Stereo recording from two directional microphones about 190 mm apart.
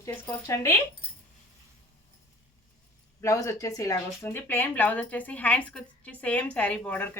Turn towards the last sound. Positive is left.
turn(degrees=10)  # may be behind; listen again after turning